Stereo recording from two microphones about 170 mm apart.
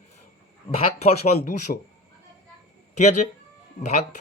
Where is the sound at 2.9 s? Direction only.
45° left (ahead or behind).